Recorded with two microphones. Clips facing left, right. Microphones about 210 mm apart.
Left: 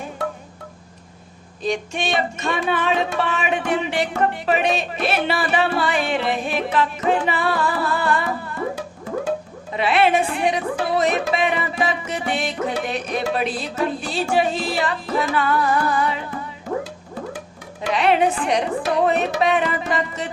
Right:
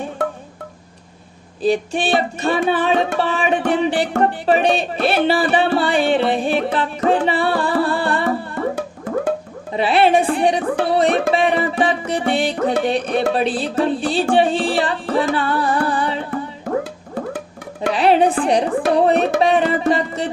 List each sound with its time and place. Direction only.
1.6 s music: 35° right (ahead or behind)
4.2 s speech: 35° right (ahead or behind)
9.7 s music: 35° right (ahead or behind)
17.9 s music: 35° right (ahead or behind)